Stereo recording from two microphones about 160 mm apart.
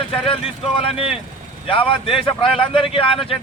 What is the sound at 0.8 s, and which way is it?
Speech, 35° left (ahead or behind).